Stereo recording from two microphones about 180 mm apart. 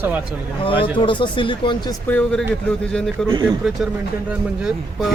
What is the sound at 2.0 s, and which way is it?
Speech, 5° left (ahead or behind).